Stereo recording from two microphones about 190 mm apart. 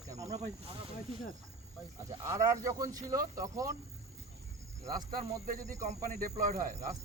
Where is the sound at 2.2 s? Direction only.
15° right (ahead or behind).